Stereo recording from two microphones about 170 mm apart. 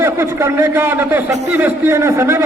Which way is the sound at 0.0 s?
15° right (ahead or behind).